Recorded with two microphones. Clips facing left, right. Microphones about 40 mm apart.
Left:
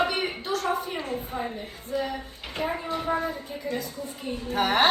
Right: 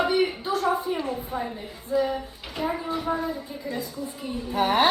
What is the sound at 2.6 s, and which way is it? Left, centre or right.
Speech, left.